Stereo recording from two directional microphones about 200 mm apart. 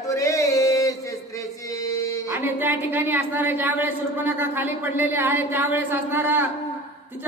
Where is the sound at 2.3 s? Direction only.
10° right (ahead or behind).